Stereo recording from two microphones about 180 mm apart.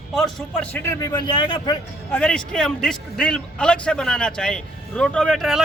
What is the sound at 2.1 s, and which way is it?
Speech, 5° left (ahead or behind).